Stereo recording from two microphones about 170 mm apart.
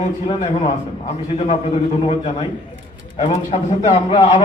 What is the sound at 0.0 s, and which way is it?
Speech, 35° left (ahead or behind).